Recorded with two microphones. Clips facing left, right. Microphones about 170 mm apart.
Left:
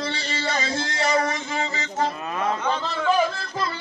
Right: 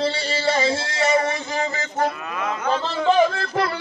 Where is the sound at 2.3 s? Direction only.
35° left (ahead or behind).